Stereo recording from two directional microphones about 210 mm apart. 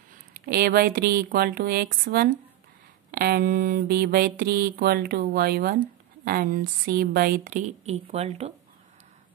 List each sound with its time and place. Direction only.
0.5 s mantra: 45° right (ahead or behind); by 8.5 s 30° right (ahead or behind)